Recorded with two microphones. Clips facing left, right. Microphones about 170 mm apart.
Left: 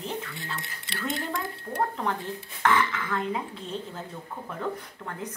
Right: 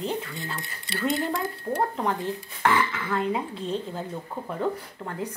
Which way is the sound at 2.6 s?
10° right (ahead or behind).